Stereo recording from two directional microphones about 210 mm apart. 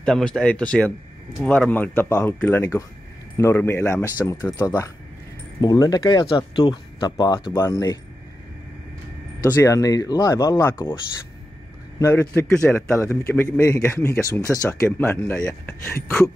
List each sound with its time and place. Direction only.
0.0 s a man's voice: 5° left (ahead or behind)
9.4 s a man's voice: 15° left (ahead or behind)
12.0 s a man's voice: 10° left (ahead or behind)